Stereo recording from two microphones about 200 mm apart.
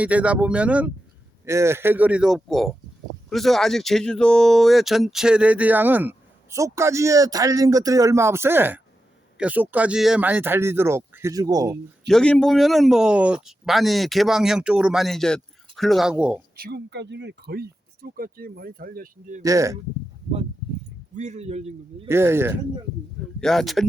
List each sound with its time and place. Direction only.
0.0 s speech: 5° right (ahead or behind)
12.0 s speech: 5° left (ahead or behind)
16.6 s speech: 55° right (ahead or behind)
19.4 s speech: 15° right (ahead or behind)
21.2 s a man's voice: 35° right (ahead or behind)
22.0 s speech: 10° right (ahead or behind)
23.4 s speech: centre (ahead or behind)